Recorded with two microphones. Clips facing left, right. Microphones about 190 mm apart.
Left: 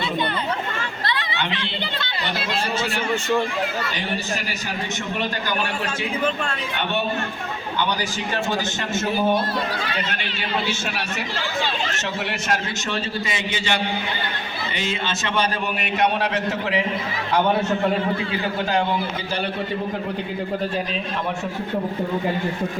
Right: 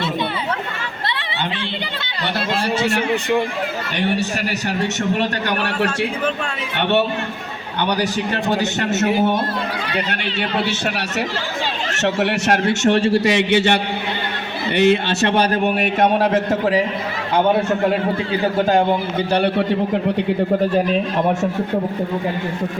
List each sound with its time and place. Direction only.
5.2 s a man's voice: 70° right (ahead or behind)
7.8 s a man's voice: 65° right (ahead or behind)
12.0 s a man's voice: 65° right (ahead or behind)
14.8 s a man's voice: 65° right (ahead or behind); by 16.8 s 45° right (ahead or behind)
19.3 s a man's voice: 70° right (ahead or behind)